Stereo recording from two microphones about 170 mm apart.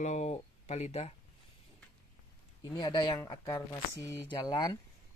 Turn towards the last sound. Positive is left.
turn(degrees=20)  # may be behind; listen again after turning